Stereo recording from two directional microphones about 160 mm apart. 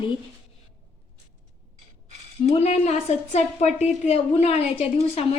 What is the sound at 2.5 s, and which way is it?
A woman's voice, 45° left (ahead or behind).